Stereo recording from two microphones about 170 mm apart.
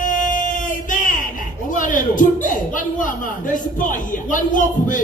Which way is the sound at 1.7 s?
50° left (ahead or behind).